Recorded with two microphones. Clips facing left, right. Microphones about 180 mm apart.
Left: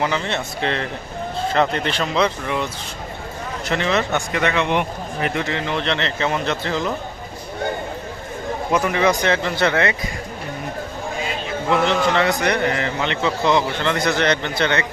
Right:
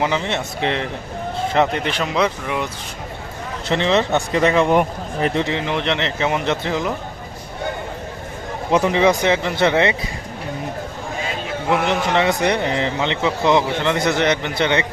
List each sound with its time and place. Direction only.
0.0 s speech: 20° right (ahead or behind)
3.7 s speech: 25° right (ahead or behind); by 5.3 s 40° right (ahead or behind)
5.3 s speech: 20° right (ahead or behind)
8.7 s a man's voice: 25° right (ahead or behind)
11.7 s a man's voice: 15° right (ahead or behind)